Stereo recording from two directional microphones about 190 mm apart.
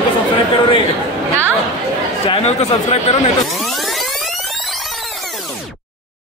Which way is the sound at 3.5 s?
Centre (ahead or behind).